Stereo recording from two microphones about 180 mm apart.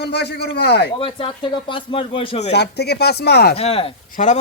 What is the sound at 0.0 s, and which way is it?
Speech, 65° left (ahead or behind).